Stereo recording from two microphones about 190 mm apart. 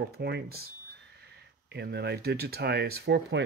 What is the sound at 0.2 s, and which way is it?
Speech, 55° right (ahead or behind).